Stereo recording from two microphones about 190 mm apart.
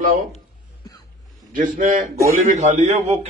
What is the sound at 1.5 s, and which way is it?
A man's voice, 45° right (ahead or behind).